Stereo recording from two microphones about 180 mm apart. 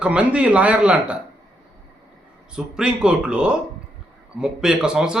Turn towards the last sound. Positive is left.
turn(degrees=-5)  # may be behind; listen again after turning